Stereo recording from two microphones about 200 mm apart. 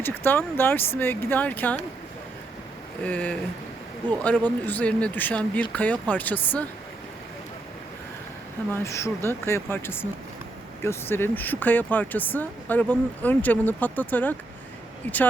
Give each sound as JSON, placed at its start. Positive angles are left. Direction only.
{"t": 0.0, "sound": "speech", "side_deg": 10}
{"t": 3.0, "sound": "speech", "side_deg": 5}
{"t": 4.6, "sound": "speech", "side_deg": 10}
{"t": 8.7, "sound": "speech", "side_deg": 15}